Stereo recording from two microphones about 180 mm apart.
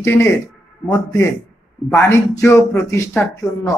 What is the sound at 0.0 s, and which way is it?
Speech, 15° left (ahead or behind).